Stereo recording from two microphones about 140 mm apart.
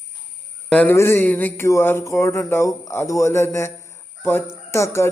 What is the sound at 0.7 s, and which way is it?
Speech, 10° left (ahead or behind).